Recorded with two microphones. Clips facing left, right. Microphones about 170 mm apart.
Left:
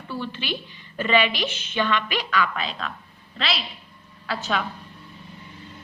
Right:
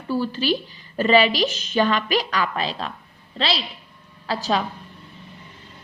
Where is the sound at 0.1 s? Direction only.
35° right (ahead or behind).